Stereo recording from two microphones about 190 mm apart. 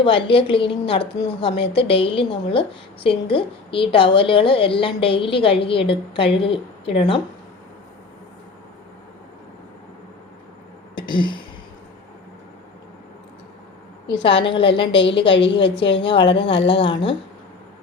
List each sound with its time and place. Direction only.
0.0 s a woman's voice: 25° left (ahead or behind)
10.9 s a sound: 25° left (ahead or behind)
14.1 s a woman's voice: 25° left (ahead or behind)
15.4 s a woman's voice: 70° left (ahead or behind)
15.8 s a woman's voice: 25° left (ahead or behind)